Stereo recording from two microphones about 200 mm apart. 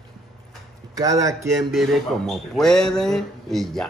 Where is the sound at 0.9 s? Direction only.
15° right (ahead or behind).